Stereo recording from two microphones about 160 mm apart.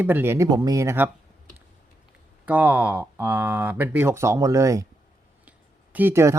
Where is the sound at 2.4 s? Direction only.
10° right (ahead or behind).